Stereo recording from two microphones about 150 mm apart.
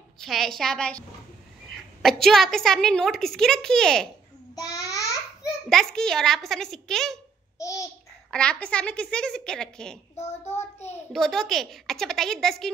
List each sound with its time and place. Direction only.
0.2 s a woman's voice: centre (ahead or behind)
4.6 s babbling: 25° left (ahead or behind)
5.7 s a woman's voice: 5° left (ahead or behind)
8.3 s a woman's voice: 5° left (ahead or behind)
10.1 s child singing: 45° left (ahead or behind)
11.1 s a woman's voice: centre (ahead or behind)